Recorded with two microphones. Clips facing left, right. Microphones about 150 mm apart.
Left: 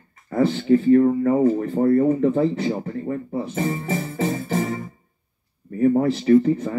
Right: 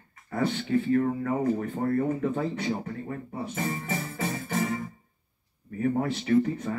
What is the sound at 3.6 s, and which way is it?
Music, 30° left (ahead or behind).